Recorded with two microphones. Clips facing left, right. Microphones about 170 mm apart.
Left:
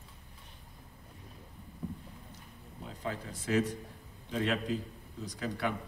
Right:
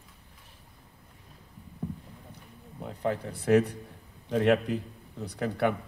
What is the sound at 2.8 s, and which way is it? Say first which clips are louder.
A man's voice: right 8 dB; 60° right (ahead or behind).